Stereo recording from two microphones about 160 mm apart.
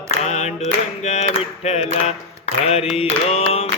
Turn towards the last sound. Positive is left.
turn(degrees=40)  # may be behind; listen again after turning